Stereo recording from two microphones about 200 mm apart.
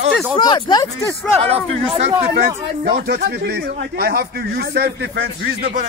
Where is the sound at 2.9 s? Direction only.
55° right (ahead or behind).